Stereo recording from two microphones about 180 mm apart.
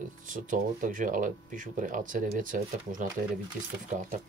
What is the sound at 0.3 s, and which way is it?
Speech, 45° right (ahead or behind).